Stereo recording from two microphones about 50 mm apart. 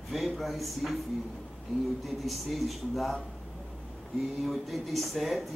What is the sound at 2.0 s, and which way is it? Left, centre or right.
A man's voice, centre.